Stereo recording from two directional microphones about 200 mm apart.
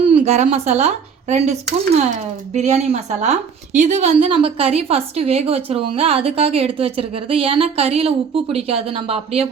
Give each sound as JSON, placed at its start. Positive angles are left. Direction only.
{"t": 0.0, "sound": "a woman's voice", "side_deg": -30}